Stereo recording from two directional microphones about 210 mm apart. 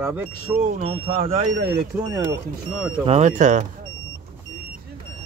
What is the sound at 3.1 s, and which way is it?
Speech, 35° right (ahead or behind).